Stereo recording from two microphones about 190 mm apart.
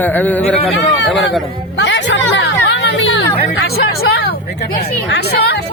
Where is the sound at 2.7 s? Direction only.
65° left (ahead or behind).